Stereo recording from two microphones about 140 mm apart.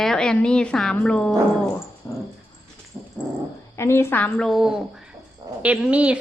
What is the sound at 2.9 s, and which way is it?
Dog, 10° right (ahead or behind).